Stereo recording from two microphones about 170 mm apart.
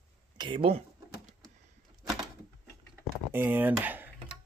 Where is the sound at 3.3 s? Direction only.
10° right (ahead or behind).